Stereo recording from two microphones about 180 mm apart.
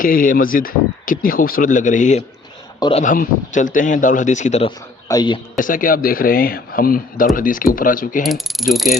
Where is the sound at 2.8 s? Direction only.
30° left (ahead or behind).